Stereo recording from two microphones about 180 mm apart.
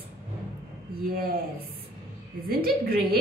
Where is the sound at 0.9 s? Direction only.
55° right (ahead or behind).